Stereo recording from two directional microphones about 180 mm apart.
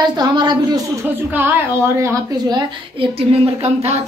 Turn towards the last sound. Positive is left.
turn(degrees=-35)  # may be behind; listen again after turning